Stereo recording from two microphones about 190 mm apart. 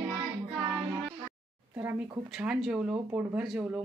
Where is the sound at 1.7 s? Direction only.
10° right (ahead or behind).